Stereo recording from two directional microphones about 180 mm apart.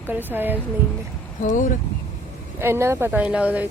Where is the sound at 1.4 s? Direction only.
45° left (ahead or behind).